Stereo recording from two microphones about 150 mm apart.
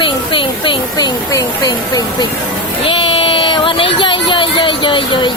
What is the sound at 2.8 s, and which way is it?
Speech, 35° left (ahead or behind).